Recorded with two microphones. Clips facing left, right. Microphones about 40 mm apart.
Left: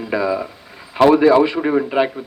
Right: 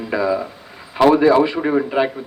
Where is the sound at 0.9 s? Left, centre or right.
Centre.